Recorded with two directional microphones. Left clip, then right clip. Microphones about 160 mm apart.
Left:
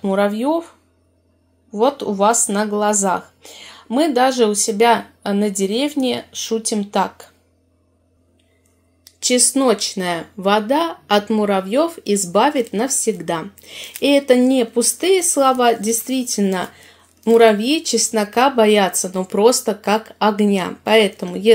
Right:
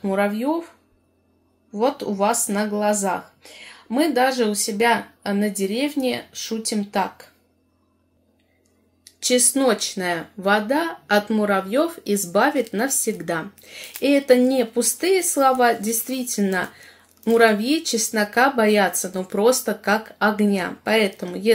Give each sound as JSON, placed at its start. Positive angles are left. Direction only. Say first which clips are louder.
{"t": 0.0, "sound": "speech", "louder": "left 4 dB", "side_deg": 25}
{"t": 1.7, "sound": "speech", "louder": "left 5 dB", "side_deg": 25}
{"t": 9.2, "sound": "speech", "louder": "left 3 dB", "side_deg": 20}